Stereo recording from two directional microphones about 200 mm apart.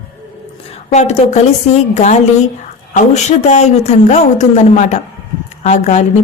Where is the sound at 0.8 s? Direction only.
35° left (ahead or behind).